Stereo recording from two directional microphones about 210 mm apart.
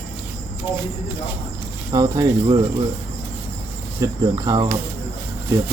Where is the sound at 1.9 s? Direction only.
20° right (ahead or behind).